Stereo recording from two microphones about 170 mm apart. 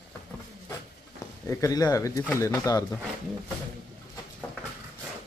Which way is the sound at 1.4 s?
20° left (ahead or behind).